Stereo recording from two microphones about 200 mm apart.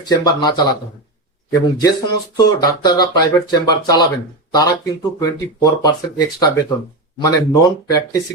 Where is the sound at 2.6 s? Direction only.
20° left (ahead or behind).